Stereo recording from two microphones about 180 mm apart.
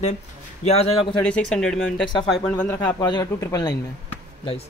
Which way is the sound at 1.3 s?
5° left (ahead or behind).